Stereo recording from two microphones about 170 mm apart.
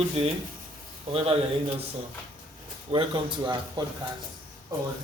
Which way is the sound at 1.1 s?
35° right (ahead or behind).